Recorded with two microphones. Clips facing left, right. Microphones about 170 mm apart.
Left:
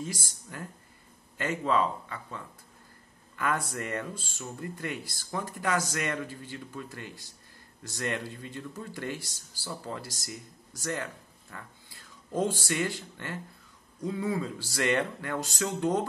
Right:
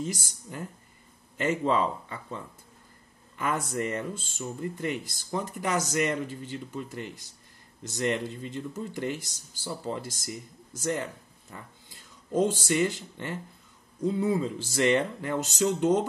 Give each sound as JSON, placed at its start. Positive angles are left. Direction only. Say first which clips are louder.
{"t": 0.0, "sound": "speech", "louder": "right 4 dB", "side_deg": -20}